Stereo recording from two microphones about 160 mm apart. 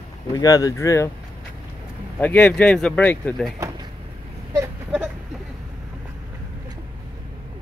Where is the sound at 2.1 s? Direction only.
10° left (ahead or behind).